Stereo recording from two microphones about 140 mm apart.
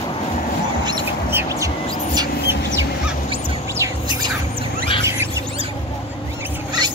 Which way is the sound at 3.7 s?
20° right (ahead or behind).